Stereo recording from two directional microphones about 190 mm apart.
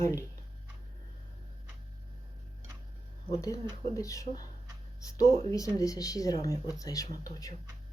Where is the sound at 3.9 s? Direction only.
15° left (ahead or behind).